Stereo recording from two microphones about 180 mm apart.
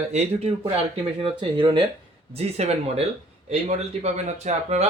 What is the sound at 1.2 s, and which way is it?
A man's voice, 25° right (ahead or behind).